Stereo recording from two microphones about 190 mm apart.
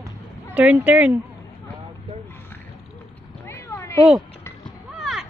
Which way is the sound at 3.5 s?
15° left (ahead or behind).